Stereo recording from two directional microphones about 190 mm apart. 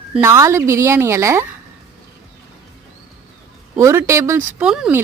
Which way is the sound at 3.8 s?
15° right (ahead or behind).